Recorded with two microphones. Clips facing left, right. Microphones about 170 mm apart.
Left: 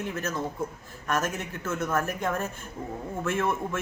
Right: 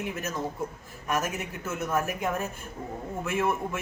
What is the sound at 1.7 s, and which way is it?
A man's voice, 15° right (ahead or behind).